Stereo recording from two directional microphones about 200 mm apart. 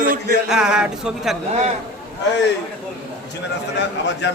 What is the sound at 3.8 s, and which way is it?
Speech, 60° left (ahead or behind).